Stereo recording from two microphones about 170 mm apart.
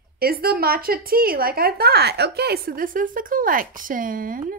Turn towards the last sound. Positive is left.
turn(degrees=-55)  # may be behind; listen again after turning